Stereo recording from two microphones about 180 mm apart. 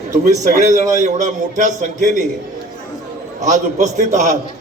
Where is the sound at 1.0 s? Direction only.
45° right (ahead or behind).